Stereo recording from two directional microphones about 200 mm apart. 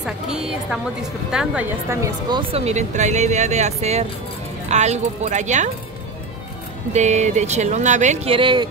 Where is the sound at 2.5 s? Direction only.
35° right (ahead or behind).